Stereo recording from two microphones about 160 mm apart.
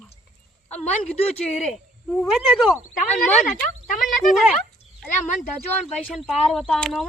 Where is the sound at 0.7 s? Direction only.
40° left (ahead or behind).